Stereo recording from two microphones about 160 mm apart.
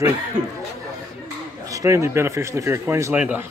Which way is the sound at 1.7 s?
20° right (ahead or behind).